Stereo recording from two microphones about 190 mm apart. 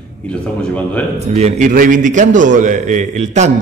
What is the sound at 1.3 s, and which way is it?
A man's voice, 35° right (ahead or behind).